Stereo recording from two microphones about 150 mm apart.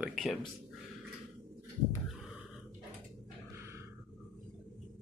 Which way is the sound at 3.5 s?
15° right (ahead or behind).